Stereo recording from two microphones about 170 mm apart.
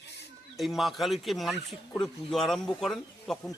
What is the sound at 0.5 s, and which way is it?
Speech, centre (ahead or behind).